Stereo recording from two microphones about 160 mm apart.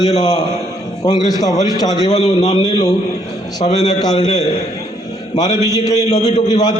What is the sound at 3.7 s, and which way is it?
Speech, 45° left (ahead or behind).